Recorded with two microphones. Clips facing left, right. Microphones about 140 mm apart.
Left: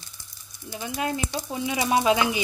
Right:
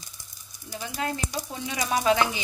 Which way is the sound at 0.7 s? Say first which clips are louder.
Left 2 dB; 15° left (ahead or behind).